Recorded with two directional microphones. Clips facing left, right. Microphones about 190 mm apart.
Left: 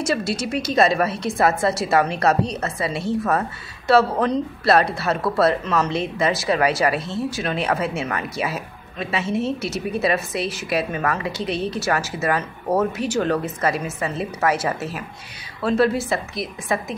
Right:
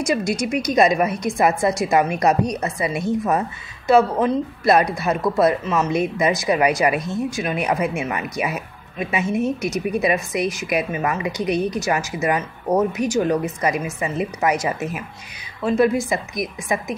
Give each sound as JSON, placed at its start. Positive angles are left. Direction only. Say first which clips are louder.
{"t": 0.0, "sound": "speech", "louder": "right 2 dB", "side_deg": -15}
{"t": 16.1, "sound": "speech", "louder": "right 1 dB", "side_deg": -15}